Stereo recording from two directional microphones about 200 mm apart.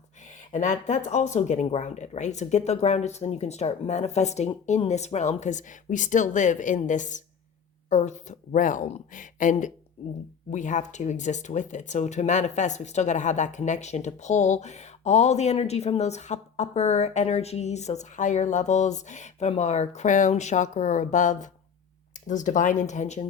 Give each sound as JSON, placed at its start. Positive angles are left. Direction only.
{"t": 0.5, "sound": "speech", "side_deg": 35}